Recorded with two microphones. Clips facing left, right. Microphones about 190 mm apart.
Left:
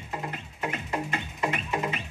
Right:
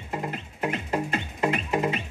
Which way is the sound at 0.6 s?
35° right (ahead or behind).